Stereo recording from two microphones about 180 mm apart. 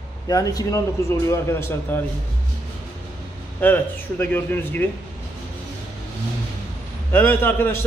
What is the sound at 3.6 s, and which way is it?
A man's voice, 10° left (ahead or behind).